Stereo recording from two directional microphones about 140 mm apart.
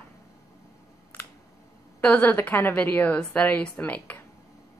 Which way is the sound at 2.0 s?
10° left (ahead or behind).